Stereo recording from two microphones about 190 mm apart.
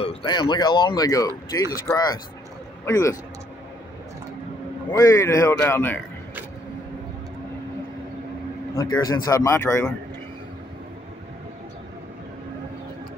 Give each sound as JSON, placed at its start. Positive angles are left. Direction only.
{"t": 0.0, "sound": "a man's voice", "side_deg": 30}
{"t": 4.9, "sound": "a man's voice", "side_deg": 15}
{"t": 8.9, "sound": "a man's voice", "side_deg": 20}